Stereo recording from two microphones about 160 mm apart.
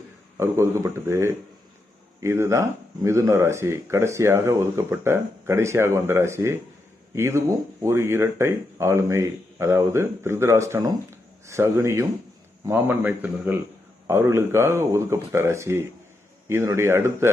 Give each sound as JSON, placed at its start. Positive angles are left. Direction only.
{"t": 0.3, "sound": "speech", "side_deg": -15}